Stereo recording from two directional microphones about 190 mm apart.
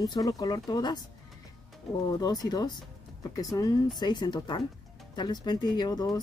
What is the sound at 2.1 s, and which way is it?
Speech, 20° left (ahead or behind).